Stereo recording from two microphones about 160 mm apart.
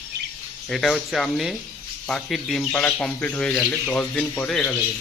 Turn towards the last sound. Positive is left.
turn(degrees=5)  # may be behind; listen again after turning